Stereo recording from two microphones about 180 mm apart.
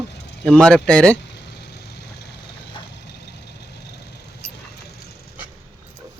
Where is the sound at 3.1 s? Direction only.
70° left (ahead or behind).